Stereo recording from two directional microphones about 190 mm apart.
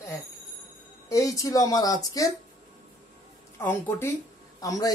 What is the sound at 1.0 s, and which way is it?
Speech, 15° left (ahead or behind).